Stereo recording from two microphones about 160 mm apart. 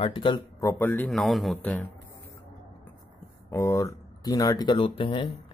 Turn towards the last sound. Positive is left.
turn(degrees=30)  # may be behind; listen again after turning